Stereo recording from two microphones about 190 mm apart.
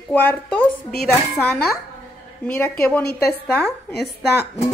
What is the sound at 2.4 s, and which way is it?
A woman's voice, 10° left (ahead or behind).